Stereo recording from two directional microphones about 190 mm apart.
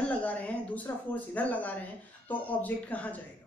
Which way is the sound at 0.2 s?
10° left (ahead or behind).